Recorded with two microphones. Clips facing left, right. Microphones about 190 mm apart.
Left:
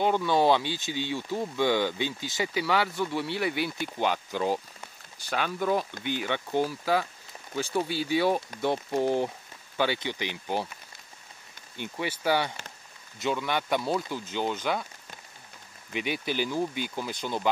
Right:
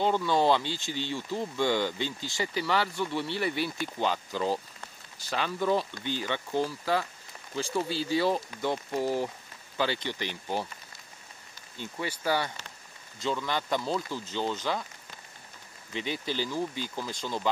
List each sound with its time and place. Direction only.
0.0 s speech: 15° left (ahead or behind)
6.6 s speech: 5° left (ahead or behind)
8.5 s speech: 20° left (ahead or behind)
9.8 s speech: 10° left (ahead or behind)
11.8 s speech: 20° left (ahead or behind)
15.9 s speech: 15° left (ahead or behind)